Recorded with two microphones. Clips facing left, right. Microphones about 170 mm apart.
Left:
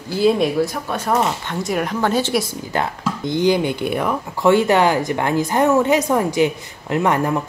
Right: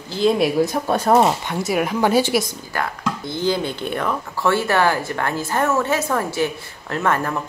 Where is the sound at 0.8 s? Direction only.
35° right (ahead or behind).